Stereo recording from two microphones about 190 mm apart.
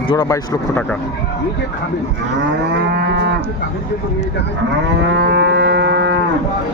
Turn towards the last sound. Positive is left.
turn(degrees=-65)  # may be behind; listen again after turning